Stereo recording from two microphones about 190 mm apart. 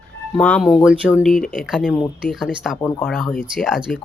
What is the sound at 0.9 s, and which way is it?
Speech, 5° right (ahead or behind).